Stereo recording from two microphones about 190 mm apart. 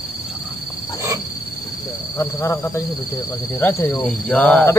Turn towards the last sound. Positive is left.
turn(degrees=5)  # may be behind; listen again after turning